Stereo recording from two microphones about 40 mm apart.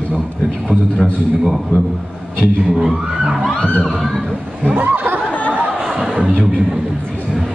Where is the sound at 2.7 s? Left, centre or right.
Centre.